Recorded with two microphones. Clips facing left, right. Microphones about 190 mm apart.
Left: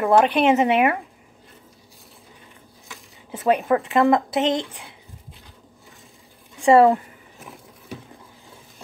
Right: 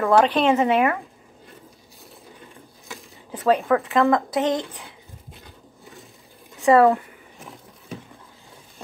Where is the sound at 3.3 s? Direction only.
15° left (ahead or behind).